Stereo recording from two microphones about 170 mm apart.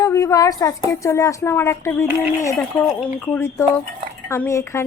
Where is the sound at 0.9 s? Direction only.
15° left (ahead or behind).